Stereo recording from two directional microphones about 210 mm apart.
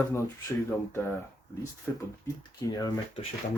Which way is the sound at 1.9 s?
10° left (ahead or behind).